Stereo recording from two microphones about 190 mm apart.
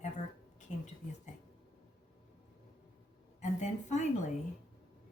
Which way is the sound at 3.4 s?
40° left (ahead or behind).